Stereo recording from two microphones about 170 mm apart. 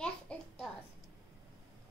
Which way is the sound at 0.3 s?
5° left (ahead or behind).